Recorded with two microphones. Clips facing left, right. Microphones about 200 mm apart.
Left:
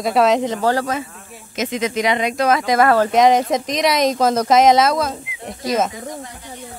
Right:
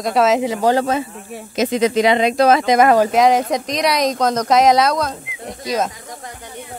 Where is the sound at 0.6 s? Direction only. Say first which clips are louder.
Right 3 dB; 20° right (ahead or behind).